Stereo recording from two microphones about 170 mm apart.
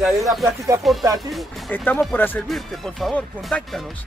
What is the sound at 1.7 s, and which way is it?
Speech, 10° left (ahead or behind).